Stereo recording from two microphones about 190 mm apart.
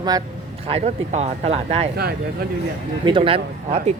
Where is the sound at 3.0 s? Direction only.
25° right (ahead or behind).